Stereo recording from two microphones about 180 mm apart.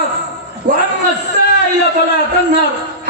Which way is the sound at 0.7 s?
60° right (ahead or behind).